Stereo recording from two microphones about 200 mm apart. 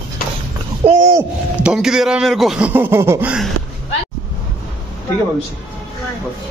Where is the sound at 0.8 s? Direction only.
35° right (ahead or behind).